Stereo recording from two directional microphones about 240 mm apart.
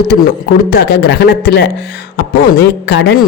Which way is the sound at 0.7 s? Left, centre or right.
Left.